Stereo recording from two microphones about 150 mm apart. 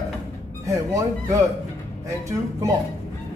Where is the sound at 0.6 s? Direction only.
20° right (ahead or behind).